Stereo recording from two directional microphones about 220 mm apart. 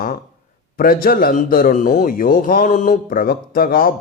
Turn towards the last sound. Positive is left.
turn(degrees=40)  # may be behind; listen again after turning